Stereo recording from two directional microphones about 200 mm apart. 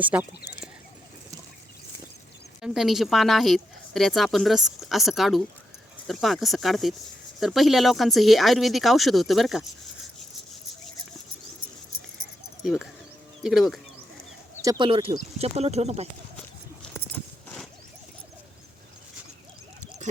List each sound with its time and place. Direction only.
0.0 s speech: 5° right (ahead or behind)
2.6 s speech: centre (ahead or behind)
12.6 s speech: centre (ahead or behind)
14.6 s speech: 20° right (ahead or behind)